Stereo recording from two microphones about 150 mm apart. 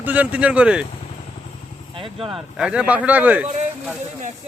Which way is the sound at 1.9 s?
35° right (ahead or behind).